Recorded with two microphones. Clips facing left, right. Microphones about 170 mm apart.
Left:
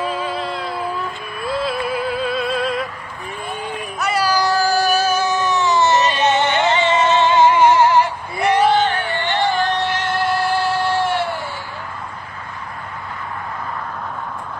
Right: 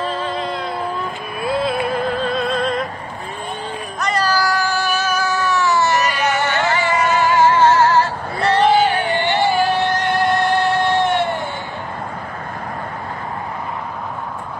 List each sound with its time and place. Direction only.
0.0 s music: 10° left (ahead or behind)
4.0 s meow: 10° left (ahead or behind)
4.5 s a sound: 35° left (ahead or behind); by 8.6 s 15° left (ahead or behind)
8.6 s music: 10° right (ahead or behind); by 11.3 s 5° left (ahead or behind)